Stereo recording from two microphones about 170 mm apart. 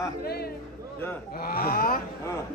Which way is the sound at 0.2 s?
65° left (ahead or behind).